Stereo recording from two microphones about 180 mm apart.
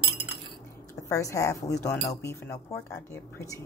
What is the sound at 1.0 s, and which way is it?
Speech, 15° left (ahead or behind).